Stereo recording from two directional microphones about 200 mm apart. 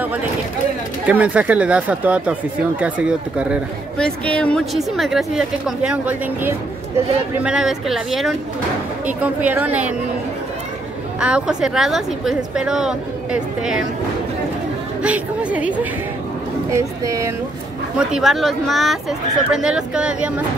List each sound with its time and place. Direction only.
1.0 s a woman's voice: 5° right (ahead or behind)
4.0 s a woman's voice: 5° left (ahead or behind)
11.1 s a woman's voice: 5° right (ahead or behind)
15.0 s speech: 5° right (ahead or behind)
17.9 s a woman's voice: centre (ahead or behind)